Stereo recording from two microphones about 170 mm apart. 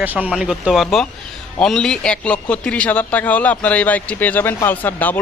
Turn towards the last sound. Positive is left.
turn(degrees=10)  # may be behind; listen again after turning